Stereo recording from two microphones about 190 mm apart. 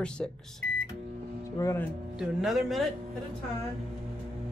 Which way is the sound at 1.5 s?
15° left (ahead or behind).